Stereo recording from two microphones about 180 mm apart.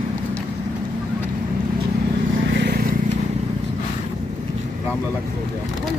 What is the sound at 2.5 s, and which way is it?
Vehicle, 60° right (ahead or behind).